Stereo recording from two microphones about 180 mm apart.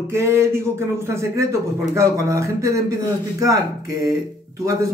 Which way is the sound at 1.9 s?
15° right (ahead or behind).